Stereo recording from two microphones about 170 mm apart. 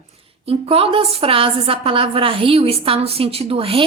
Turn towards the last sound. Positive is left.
turn(degrees=-35)  # may be behind; listen again after turning